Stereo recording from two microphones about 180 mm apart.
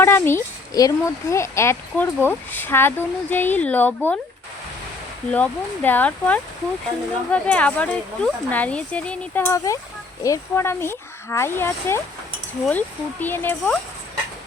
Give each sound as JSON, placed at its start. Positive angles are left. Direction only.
{"t": 0.0, "sound": "speech", "side_deg": 15}
{"t": 5.3, "sound": "speech", "side_deg": 10}